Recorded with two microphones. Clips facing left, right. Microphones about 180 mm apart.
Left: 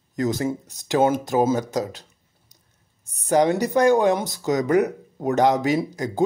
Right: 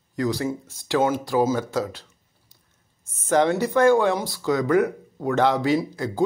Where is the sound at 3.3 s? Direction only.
15° left (ahead or behind).